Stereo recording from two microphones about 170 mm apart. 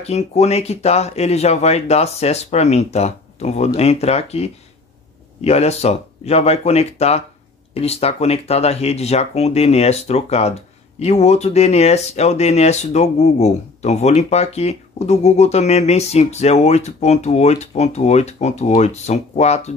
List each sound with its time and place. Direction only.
0.0 s speech: 40° left (ahead or behind)